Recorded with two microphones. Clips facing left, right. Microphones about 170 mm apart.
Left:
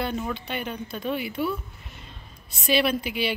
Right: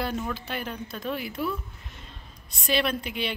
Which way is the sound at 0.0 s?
Centre (ahead or behind).